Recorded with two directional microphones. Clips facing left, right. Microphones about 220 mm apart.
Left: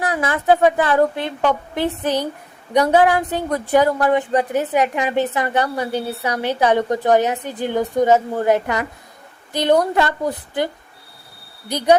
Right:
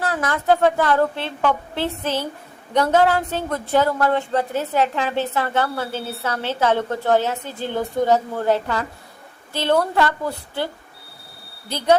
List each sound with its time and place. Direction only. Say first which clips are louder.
0.0 s a woman's voice: left 2 dB; 15° left (ahead or behind)
11.7 s a woman's voice: left 4 dB; 15° left (ahead or behind)